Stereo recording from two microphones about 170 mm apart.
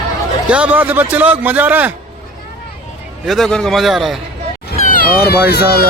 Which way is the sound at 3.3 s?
Centre (ahead or behind).